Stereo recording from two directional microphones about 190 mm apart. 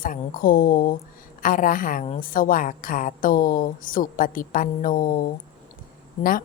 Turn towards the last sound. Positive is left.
turn(degrees=45)  # may be behind; listen again after turning